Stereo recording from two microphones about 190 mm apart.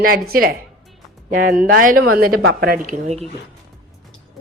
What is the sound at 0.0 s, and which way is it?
Speech, 50° right (ahead or behind).